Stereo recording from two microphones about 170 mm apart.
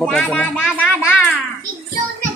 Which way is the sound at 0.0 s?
5° left (ahead or behind).